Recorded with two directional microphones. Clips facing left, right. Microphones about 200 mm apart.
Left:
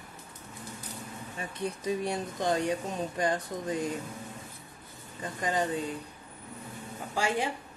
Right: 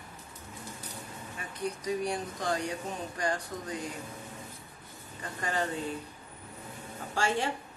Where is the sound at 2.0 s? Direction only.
20° left (ahead or behind).